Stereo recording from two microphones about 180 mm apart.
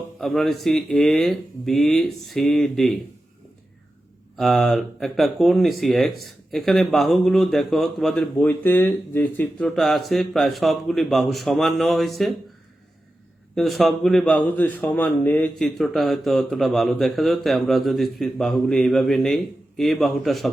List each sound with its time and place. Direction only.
0.2 s speech: centre (ahead or behind)
4.4 s speech: centre (ahead or behind)
13.6 s speech: centre (ahead or behind)